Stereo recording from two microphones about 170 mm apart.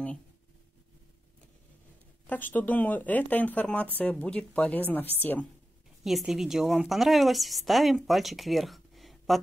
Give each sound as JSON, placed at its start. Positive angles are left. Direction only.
{"t": 2.2, "sound": "speech", "side_deg": 10}
{"t": 6.0, "sound": "speech", "side_deg": 0}